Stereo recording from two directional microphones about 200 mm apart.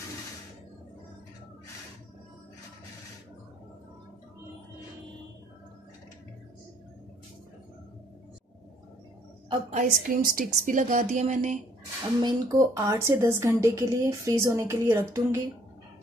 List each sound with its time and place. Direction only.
9.5 s a woman's voice: 35° right (ahead or behind)
12.2 s a woman's voice: 20° right (ahead or behind)